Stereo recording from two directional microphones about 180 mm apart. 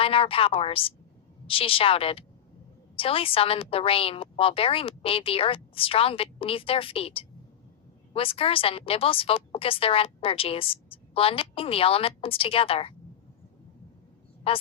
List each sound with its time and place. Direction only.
0.0 s speech: 30° left (ahead or behind)
14.5 s speech: 30° left (ahead or behind)